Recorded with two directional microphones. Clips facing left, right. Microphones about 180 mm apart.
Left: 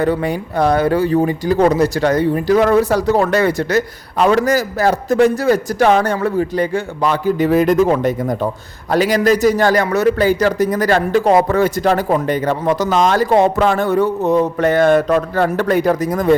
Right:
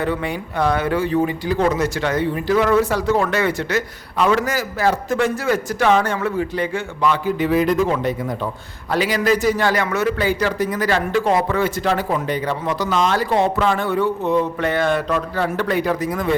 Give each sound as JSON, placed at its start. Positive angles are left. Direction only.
{"t": 0.0, "sound": "speech", "side_deg": 40}